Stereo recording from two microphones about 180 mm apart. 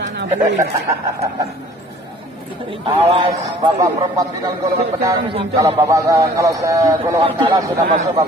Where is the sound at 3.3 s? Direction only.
20° right (ahead or behind).